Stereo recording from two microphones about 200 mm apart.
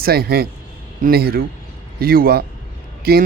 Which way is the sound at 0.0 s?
50° right (ahead or behind).